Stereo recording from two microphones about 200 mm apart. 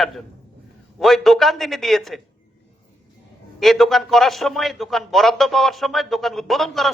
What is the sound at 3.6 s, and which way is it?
A man's voice, centre (ahead or behind).